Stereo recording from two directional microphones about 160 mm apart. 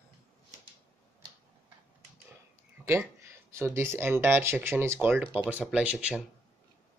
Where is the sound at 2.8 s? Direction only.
15° right (ahead or behind).